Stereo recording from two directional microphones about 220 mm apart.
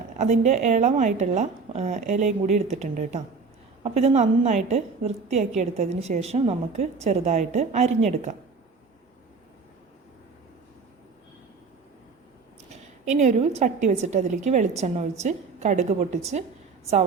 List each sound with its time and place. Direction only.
0.2 s a woman's voice: 35° right (ahead or behind)
12.7 s a woman's voice: 30° right (ahead or behind)